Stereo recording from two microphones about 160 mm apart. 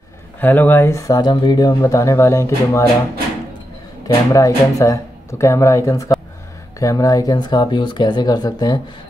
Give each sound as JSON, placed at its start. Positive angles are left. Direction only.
{"t": 0.4, "sound": "speech", "side_deg": 10}
{"t": 4.3, "sound": "speech", "side_deg": 20}